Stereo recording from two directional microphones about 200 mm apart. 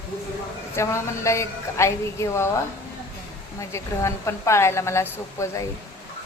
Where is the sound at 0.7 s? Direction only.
15° left (ahead or behind).